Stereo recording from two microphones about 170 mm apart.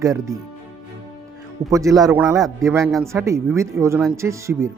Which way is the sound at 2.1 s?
10° right (ahead or behind).